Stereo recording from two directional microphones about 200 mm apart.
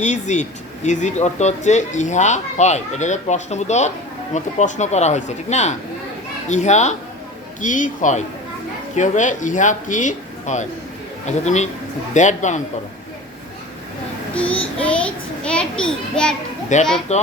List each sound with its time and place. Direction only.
0.0 s speech: 35° left (ahead or behind)
14.3 s child singing: 5° left (ahead or behind)
14.8 s a child's voice: 5° left (ahead or behind)
16.7 s speech: 35° left (ahead or behind)